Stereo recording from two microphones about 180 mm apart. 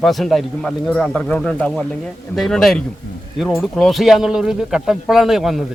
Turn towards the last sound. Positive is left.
turn(degrees=0)  # may be behind; listen again after turning